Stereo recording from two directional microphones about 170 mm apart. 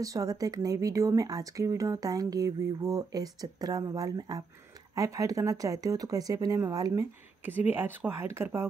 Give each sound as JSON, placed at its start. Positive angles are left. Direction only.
{"t": 0.0, "sound": "speech", "side_deg": -20}